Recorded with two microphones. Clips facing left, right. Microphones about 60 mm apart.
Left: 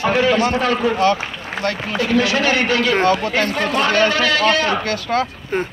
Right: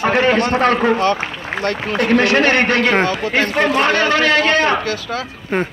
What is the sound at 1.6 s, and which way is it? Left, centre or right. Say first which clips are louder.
A man's voice: right 3 dB; right.